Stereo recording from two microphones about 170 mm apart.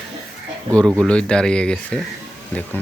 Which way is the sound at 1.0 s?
5° left (ahead or behind).